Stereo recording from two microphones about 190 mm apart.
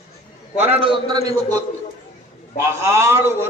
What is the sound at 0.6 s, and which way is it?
Speech, 30° right (ahead or behind).